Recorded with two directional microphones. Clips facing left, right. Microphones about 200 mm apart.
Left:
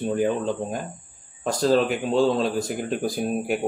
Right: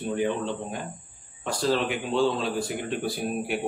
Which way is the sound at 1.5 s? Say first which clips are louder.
Left 5 dB; 40° left (ahead or behind).